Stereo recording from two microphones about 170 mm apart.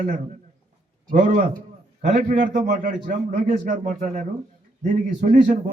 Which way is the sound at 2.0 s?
45° right (ahead or behind).